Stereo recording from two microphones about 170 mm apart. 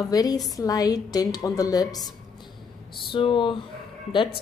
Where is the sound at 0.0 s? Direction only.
20° left (ahead or behind).